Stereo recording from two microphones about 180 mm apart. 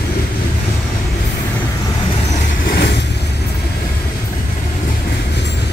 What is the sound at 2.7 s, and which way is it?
Vehicle, 65° left (ahead or behind).